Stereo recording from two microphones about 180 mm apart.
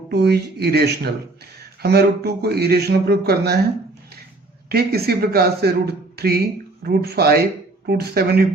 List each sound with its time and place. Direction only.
0.1 s speech: 65° right (ahead or behind)
4.7 s speech: 60° right (ahead or behind)